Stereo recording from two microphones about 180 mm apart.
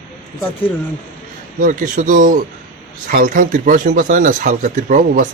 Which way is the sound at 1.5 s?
45° right (ahead or behind).